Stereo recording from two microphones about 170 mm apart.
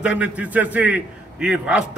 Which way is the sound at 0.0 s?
5° right (ahead or behind).